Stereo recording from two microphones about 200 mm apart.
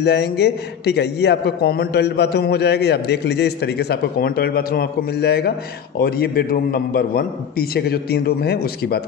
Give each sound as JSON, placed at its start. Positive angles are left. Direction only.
{"t": 0.0, "sound": "a man's voice", "side_deg": 55}